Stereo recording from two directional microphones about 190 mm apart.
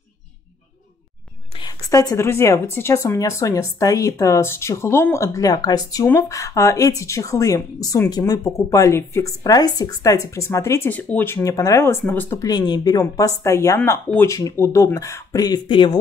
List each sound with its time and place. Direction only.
1.6 s a woman's voice: 20° left (ahead or behind)